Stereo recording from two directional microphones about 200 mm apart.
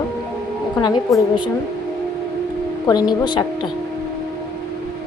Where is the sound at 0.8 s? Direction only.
20° left (ahead or behind).